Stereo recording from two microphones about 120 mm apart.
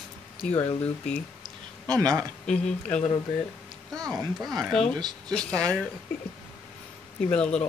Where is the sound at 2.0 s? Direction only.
30° right (ahead or behind).